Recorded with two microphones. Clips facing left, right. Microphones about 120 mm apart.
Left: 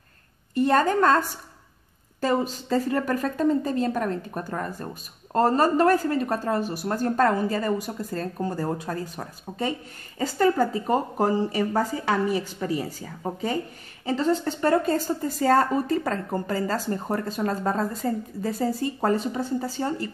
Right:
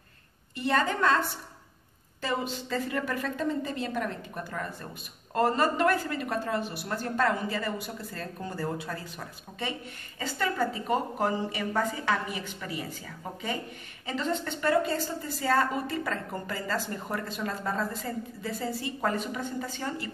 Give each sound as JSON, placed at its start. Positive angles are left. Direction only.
{"t": 0.6, "sound": "a woman's voice", "side_deg": 45}
{"t": 2.2, "sound": "a woman's voice", "side_deg": 40}